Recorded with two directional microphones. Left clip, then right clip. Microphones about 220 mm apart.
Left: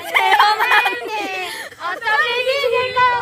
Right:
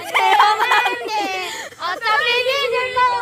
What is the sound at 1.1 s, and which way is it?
Speech, 30° right (ahead or behind).